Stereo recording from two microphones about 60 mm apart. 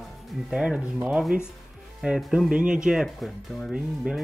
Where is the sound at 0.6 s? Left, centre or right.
Centre.